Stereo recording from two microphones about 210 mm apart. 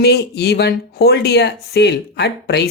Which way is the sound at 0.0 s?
50° left (ahead or behind).